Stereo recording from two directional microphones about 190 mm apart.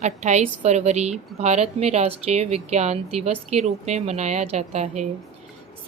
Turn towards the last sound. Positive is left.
turn(degrees=-35)  # may be behind; listen again after turning